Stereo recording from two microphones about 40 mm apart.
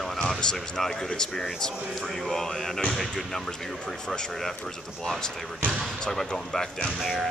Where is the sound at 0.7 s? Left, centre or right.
Centre.